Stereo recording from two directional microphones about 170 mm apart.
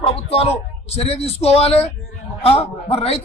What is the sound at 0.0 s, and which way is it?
A man's voice, 35° left (ahead or behind).